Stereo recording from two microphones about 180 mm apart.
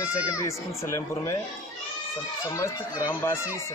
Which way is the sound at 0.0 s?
15° left (ahead or behind).